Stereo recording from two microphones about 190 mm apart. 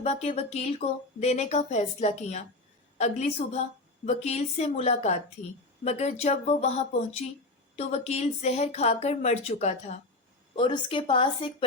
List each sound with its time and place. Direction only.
0.0 s speech: 35° left (ahead or behind)
10.5 s speech: 25° left (ahead or behind)